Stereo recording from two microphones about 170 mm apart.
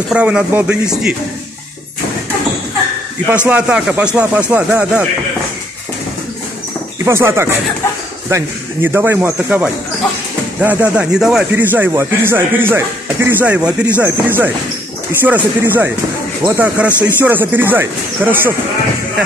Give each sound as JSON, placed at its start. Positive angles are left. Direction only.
{"t": 0.1, "sound": "speech", "side_deg": -5}
{"t": 3.4, "sound": "speech", "side_deg": -5}
{"t": 7.1, "sound": "speech", "side_deg": -15}